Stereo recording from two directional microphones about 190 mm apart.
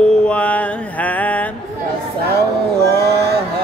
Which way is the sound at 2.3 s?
60° right (ahead or behind).